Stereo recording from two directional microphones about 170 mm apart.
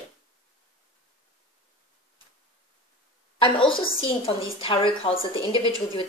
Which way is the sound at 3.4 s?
30° left (ahead or behind).